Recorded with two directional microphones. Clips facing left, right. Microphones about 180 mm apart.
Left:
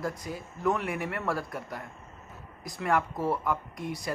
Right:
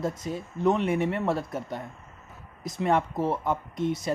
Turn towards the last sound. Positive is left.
turn(degrees=-25)  # may be behind; listen again after turning